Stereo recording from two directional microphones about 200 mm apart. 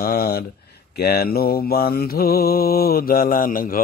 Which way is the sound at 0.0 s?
45° left (ahead or behind).